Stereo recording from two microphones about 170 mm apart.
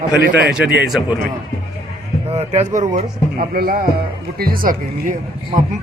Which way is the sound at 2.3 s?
40° right (ahead or behind).